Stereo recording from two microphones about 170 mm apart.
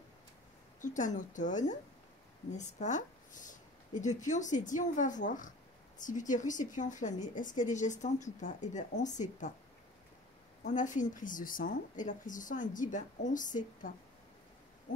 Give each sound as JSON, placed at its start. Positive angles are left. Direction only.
{"t": 0.7, "sound": "a woman's voice", "side_deg": 50}
{"t": 10.6, "sound": "a woman's voice", "side_deg": 50}